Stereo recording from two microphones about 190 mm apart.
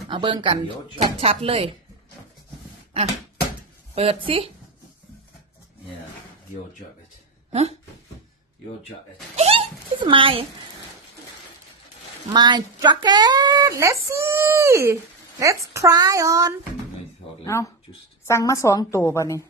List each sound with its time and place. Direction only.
0.1 s speech: 25° right (ahead or behind)
3.9 s speech: 30° right (ahead or behind)
7.5 s speech: 35° right (ahead or behind)
9.3 s a sound: 30° right (ahead or behind)
12.3 s a woman's voice: 20° right (ahead or behind)
17.4 s a woman's voice: 15° left (ahead or behind)